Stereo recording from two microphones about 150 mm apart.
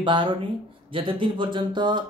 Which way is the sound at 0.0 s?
30° right (ahead or behind).